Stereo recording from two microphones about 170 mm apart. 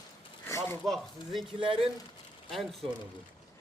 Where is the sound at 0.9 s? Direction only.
Centre (ahead or behind).